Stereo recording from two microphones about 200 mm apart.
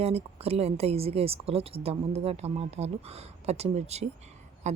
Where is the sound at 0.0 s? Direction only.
30° right (ahead or behind).